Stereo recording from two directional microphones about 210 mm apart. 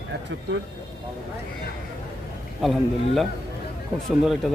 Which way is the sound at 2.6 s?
Centre (ahead or behind).